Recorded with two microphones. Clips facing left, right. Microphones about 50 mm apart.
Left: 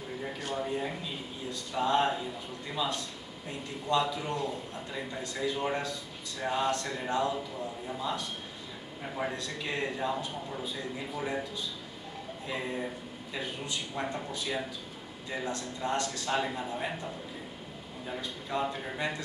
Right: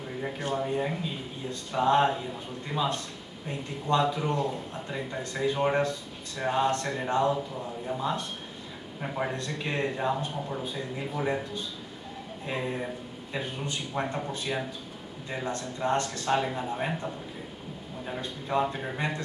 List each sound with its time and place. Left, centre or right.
0.2 s a sound: right
1.5 s speech: right
3.8 s speech: right
9.0 s speech: centre
9.3 s speech: right
11.1 s speech: right
18.2 s speech: right